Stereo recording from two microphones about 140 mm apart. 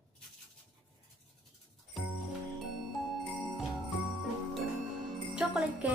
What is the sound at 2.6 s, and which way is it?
Music, centre (ahead or behind).